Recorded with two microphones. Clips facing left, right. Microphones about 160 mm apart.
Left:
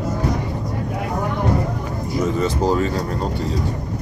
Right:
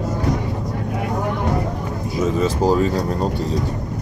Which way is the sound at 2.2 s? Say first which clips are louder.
Right 1 dB; 10° right (ahead or behind).